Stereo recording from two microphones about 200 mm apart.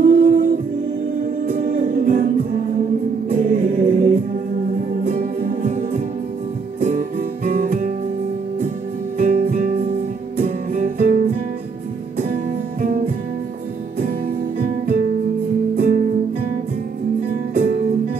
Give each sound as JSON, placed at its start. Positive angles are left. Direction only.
{"t": 0.0, "sound": "music", "side_deg": -40}
{"t": 9.2, "sound": "music", "side_deg": -45}
{"t": 12.8, "sound": "music", "side_deg": -45}
{"t": 15.7, "sound": "music", "side_deg": -45}
{"t": 17.6, "sound": "music", "side_deg": -45}